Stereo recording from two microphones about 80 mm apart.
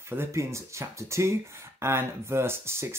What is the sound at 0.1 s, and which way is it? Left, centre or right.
Speech, right.